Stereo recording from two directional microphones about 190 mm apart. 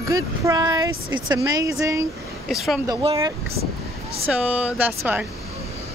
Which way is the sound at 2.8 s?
20° right (ahead or behind).